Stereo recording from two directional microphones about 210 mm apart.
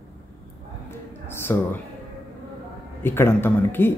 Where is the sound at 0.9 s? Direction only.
10° left (ahead or behind).